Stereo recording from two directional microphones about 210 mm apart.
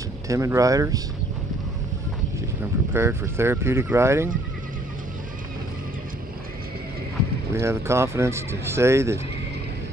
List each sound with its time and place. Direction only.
0.3 s speech: 15° right (ahead or behind)
2.6 s speech: 10° right (ahead or behind)
7.5 s speech: 15° right (ahead or behind)